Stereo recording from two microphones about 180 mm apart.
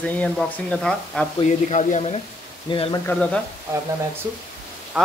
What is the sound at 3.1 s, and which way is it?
Speech, 5° left (ahead or behind).